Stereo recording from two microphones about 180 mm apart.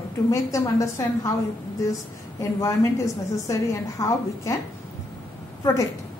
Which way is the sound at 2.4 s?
20° left (ahead or behind).